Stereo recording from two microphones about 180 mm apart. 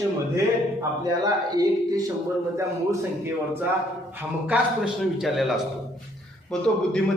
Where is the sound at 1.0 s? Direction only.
20° right (ahead or behind).